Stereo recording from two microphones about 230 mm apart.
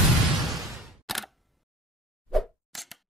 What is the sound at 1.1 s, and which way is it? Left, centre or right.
Single-lens reflex camera, centre.